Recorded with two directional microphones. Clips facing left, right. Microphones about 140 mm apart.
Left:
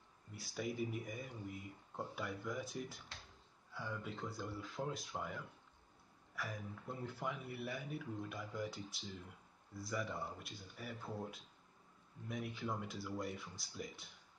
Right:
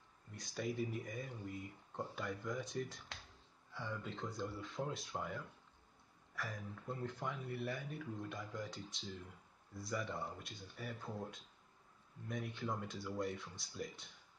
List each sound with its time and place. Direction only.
0.3 s speech: 5° left (ahead or behind)